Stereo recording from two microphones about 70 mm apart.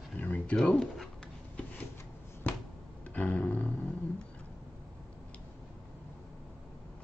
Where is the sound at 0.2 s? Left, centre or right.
Left.